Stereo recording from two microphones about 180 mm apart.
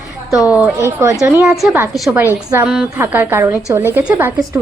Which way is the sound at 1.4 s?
Centre (ahead or behind).